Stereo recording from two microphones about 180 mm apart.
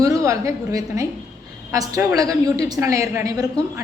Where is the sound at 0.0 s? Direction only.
20° right (ahead or behind).